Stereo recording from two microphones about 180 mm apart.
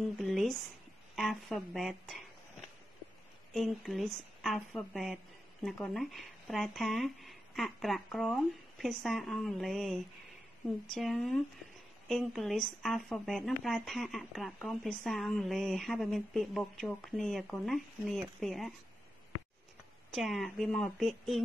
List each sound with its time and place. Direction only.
0.2 s a woman's voice: centre (ahead or behind)
3.5 s a woman's voice: centre (ahead or behind)
20.1 s a woman's voice: centre (ahead or behind)